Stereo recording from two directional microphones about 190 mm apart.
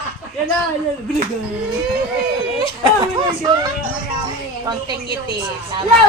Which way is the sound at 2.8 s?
20° right (ahead or behind).